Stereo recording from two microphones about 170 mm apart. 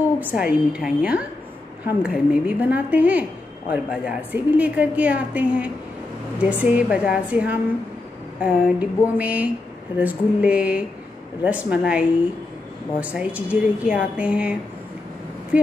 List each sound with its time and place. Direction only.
0.2 s a woman's voice: 5° right (ahead or behind)